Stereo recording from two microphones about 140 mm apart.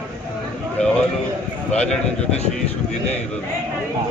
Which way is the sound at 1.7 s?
5° left (ahead or behind).